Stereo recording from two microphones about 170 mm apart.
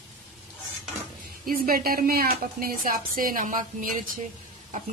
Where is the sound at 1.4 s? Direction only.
60° right (ahead or behind).